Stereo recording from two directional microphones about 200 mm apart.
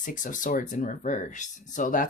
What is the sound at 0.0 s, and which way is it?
Speech, 40° left (ahead or behind).